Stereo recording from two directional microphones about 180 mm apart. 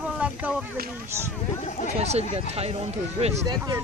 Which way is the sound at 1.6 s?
40° left (ahead or behind).